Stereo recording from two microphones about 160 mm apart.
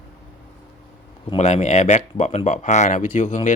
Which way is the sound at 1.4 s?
45° left (ahead or behind).